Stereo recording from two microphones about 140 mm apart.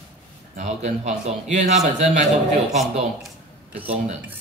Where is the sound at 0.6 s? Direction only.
55° right (ahead or behind).